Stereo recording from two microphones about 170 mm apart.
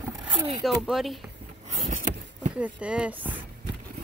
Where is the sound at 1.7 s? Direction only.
45° right (ahead or behind).